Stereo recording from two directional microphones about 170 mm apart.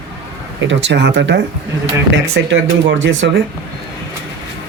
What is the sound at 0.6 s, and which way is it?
Speech, 90° right.